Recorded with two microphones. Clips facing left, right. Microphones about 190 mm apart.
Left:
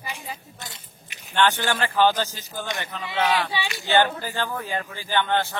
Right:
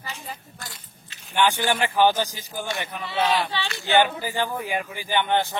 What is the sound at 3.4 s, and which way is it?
Speech, 15° left (ahead or behind).